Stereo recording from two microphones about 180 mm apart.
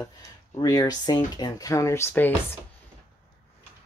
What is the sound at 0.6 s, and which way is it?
Speech, 20° left (ahead or behind).